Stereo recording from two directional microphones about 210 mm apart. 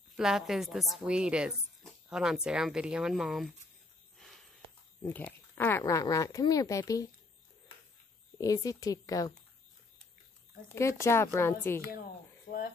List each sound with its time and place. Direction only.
0.1 s a woman's voice: centre (ahead or behind)
5.0 s speech: 10° left (ahead or behind)
8.4 s speech: 15° left (ahead or behind)
10.7 s speech: 15° left (ahead or behind)